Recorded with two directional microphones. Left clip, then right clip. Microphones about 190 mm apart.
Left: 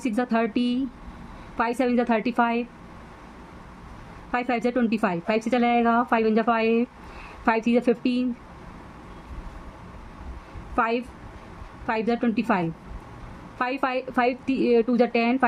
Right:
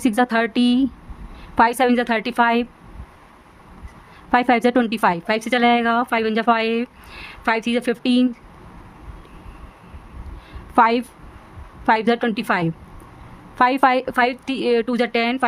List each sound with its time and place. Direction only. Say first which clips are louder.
0.0 s a woman's voice: right 6 dB; 55° right (ahead or behind)
4.3 s a woman's voice: right 9 dB; 55° right (ahead or behind)
10.8 s a woman's voice: right 9 dB; 55° right (ahead or behind)